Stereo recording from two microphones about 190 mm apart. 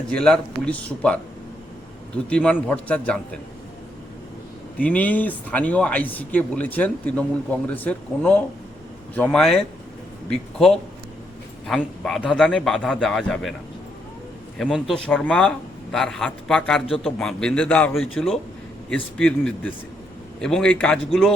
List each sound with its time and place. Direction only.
0.1 s speech: 5° left (ahead or behind)
2.3 s speech: 5° left (ahead or behind)
4.8 s speech: 10° left (ahead or behind)
11.7 s speech: centre (ahead or behind)
14.6 s speech: 5° left (ahead or behind)
17.9 s a man's voice: 90° left
18.9 s speech: 5° left (ahead or behind)